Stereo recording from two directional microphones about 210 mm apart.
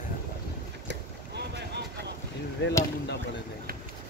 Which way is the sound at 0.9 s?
55° right (ahead or behind).